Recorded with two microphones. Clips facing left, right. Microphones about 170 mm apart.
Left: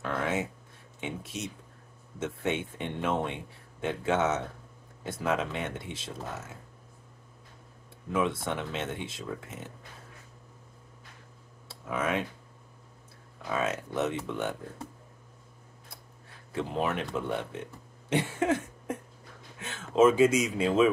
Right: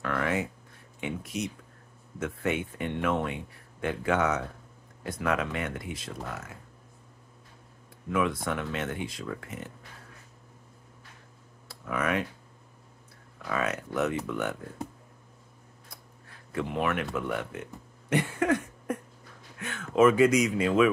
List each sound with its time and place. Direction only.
0.0 s a sound: 20° left (ahead or behind)
1.0 s speech: 25° left (ahead or behind)
8.1 s speech: 25° left (ahead or behind)
11.6 s computer keyboard: 20° left (ahead or behind)
13.5 s speech: 25° left (ahead or behind)
16.5 s speech: 25° left (ahead or behind)
18.4 s cough: 25° left (ahead or behind)
19.6 s speech: 25° left (ahead or behind)